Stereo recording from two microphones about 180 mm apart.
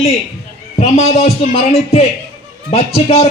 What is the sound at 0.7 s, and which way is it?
A man's voice, 40° left (ahead or behind).